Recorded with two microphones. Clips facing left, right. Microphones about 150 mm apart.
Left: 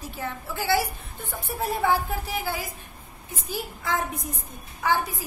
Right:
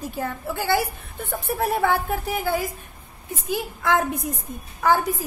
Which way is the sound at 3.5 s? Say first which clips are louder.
Right 7 dB; 65° right (ahead or behind).